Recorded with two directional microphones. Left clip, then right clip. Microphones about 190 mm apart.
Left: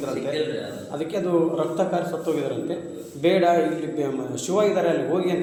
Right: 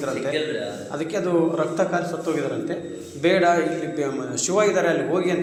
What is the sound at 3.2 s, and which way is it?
A man's voice, centre (ahead or behind).